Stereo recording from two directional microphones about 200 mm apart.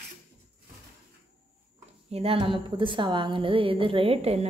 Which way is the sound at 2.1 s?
30° right (ahead or behind).